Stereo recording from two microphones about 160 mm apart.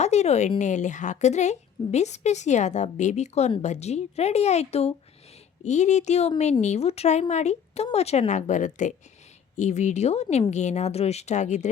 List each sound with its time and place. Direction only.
0.0 s a woman's voice: 45° left (ahead or behind)